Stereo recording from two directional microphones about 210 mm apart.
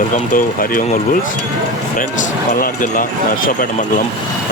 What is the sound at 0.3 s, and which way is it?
Speech, 40° left (ahead or behind).